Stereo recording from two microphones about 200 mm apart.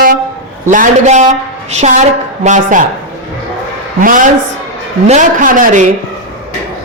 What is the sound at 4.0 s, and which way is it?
A woman's voice, 40° right (ahead or behind).